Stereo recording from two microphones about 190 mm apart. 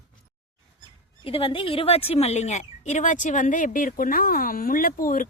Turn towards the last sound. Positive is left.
turn(degrees=45)  # may be behind; listen again after turning